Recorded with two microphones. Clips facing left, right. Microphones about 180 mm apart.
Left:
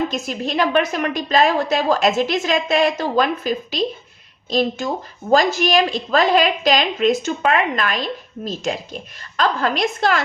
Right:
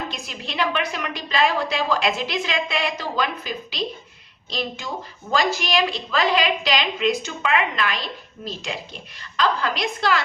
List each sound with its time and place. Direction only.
0.1 s a woman's voice: 45° left (ahead or behind)